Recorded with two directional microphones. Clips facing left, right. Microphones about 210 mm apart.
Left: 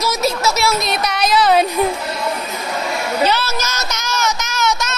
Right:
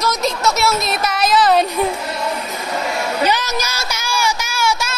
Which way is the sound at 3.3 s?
15° right (ahead or behind).